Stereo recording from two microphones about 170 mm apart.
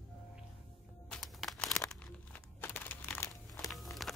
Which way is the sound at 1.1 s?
Centre (ahead or behind).